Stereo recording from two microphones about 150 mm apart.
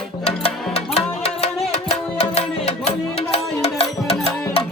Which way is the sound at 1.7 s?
45° left (ahead or behind).